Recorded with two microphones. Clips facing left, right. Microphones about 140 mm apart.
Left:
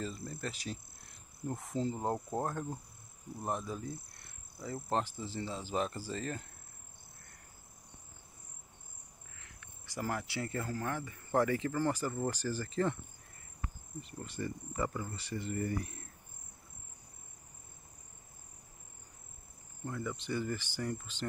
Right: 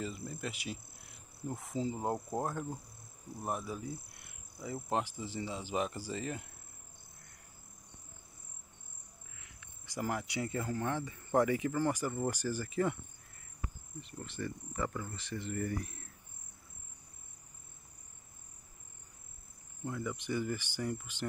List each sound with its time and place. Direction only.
0.3 s speech: 10° right (ahead or behind)
9.4 s speech: 15° right (ahead or behind)
14.2 s speech: 10° left (ahead or behind)
19.8 s speech: 15° right (ahead or behind)